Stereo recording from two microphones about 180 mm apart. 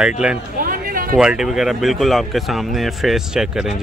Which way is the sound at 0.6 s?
55° right (ahead or behind).